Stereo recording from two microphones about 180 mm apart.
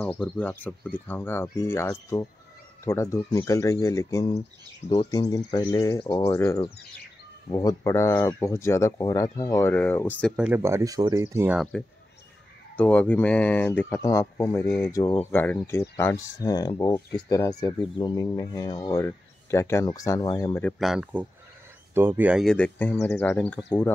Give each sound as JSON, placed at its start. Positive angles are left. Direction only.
{"t": 0.2, "sound": "speech", "side_deg": 10}
{"t": 10.3, "sound": "speech", "side_deg": -10}
{"t": 11.5, "sound": "speech", "side_deg": 0}
{"t": 20.8, "sound": "speech", "side_deg": -5}
{"t": 22.4, "sound": "speech", "side_deg": 5}